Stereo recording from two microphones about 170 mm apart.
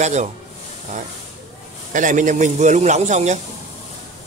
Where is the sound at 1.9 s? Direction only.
50° right (ahead or behind).